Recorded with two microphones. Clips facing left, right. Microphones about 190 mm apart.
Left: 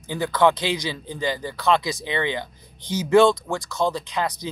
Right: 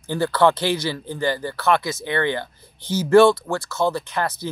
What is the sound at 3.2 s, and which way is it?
Speech, 5° right (ahead or behind).